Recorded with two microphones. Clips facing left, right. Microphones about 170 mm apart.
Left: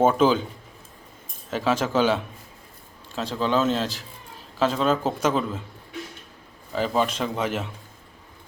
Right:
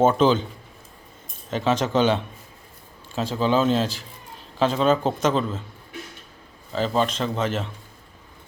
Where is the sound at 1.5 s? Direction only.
5° left (ahead or behind).